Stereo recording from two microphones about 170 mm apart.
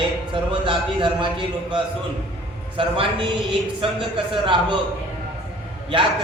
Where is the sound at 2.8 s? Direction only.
30° right (ahead or behind).